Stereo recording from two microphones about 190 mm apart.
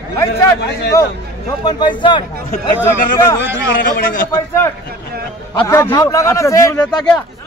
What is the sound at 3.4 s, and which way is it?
Speech, 50° left (ahead or behind).